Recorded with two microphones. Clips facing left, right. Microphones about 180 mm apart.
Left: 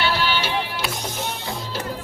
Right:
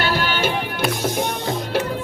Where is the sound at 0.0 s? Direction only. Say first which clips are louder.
Right 2 dB; 50° right (ahead or behind).